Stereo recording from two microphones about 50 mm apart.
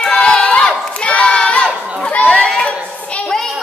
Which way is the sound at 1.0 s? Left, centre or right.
Left.